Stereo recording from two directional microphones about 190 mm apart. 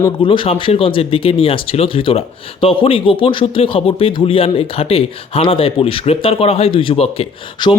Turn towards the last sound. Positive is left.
turn(degrees=25)  # may be behind; listen again after turning